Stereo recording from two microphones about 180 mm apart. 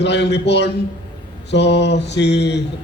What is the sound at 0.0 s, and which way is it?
A man's voice, 70° left (ahead or behind).